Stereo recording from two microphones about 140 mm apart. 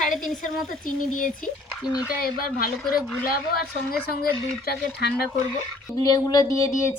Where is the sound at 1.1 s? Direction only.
70° left (ahead or behind).